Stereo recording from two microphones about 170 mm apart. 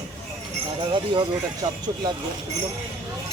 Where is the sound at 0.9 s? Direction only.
30° right (ahead or behind).